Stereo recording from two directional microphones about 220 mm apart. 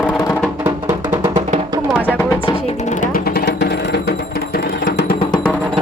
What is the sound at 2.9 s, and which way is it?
Music, 40° left (ahead or behind).